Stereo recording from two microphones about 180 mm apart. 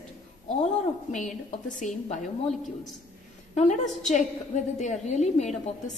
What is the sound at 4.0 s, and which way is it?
A woman's voice, 40° left (ahead or behind).